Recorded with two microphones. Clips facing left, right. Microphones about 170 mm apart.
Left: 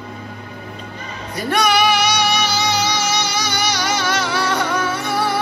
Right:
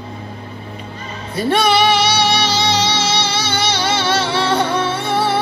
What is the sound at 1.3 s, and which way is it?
Music, 30° right (ahead or behind).